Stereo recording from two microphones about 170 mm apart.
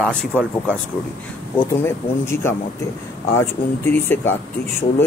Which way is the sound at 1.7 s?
15° left (ahead or behind).